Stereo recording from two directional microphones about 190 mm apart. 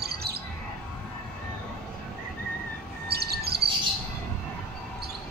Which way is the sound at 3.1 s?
55° right (ahead or behind).